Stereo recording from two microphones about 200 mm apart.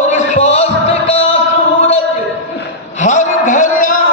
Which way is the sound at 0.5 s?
35° left (ahead or behind).